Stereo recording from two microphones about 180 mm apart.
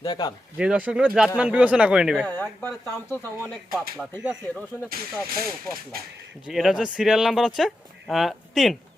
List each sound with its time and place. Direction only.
0.0 s speech: 20° left (ahead or behind)
0.5 s speech: 5° right (ahead or behind)
2.2 s speech: 10° left (ahead or behind)
4.2 s speech: 5° right (ahead or behind)
4.9 s speech: 55° right (ahead or behind)
6.5 s speech: centre (ahead or behind)